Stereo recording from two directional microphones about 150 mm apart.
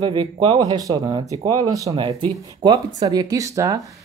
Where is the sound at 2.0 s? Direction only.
35° right (ahead or behind).